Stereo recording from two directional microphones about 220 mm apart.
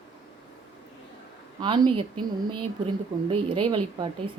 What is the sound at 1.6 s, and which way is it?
Speech, 20° right (ahead or behind).